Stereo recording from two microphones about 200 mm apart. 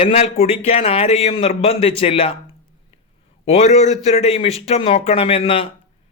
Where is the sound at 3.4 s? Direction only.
35° left (ahead or behind).